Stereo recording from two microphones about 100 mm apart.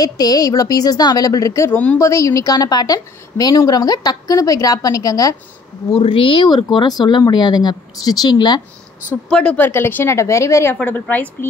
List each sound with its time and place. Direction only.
0.0 s a woman's voice: 40° left (ahead or behind)
1.7 s a woman's voice: 15° left (ahead or behind)
2.0 s a woman's voice: 30° left (ahead or behind)
6.0 s speech: 60° left (ahead or behind); by 8.6 s 45° left (ahead or behind)
9.3 s a woman's voice: 10° left (ahead or behind)
9.7 s speech: 20° left (ahead or behind)
10.8 s a woman's voice: 15° left (ahead or behind)